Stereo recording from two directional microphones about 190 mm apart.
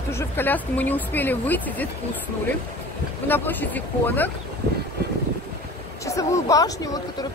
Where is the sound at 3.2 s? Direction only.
10° left (ahead or behind).